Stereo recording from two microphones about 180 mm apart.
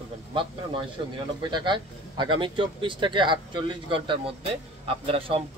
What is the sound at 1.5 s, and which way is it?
A man's voice, 25° right (ahead or behind).